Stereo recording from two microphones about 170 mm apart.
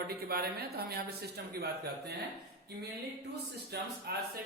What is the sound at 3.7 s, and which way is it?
Speech, 65° right (ahead or behind).